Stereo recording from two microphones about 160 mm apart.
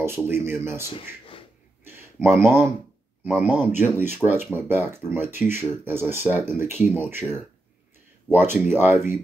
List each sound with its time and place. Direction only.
0.0 s speech: 15° right (ahead or behind)
1.9 s speech: 15° right (ahead or behind)